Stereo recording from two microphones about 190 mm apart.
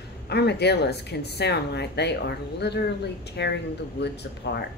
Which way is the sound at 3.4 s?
65° left (ahead or behind).